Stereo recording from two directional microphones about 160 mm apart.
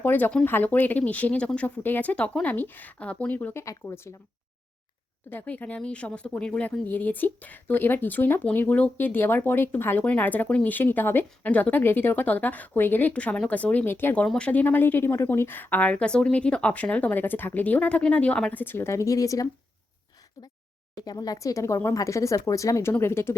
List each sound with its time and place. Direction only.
0.0 s speech: 10° left (ahead or behind)
5.3 s speech: 10° left (ahead or behind)
21.0 s speech: 25° left (ahead or behind)